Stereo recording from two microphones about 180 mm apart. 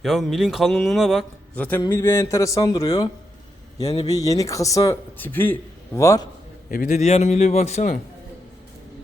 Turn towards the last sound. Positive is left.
turn(degrees=40)  # may be behind; listen again after turning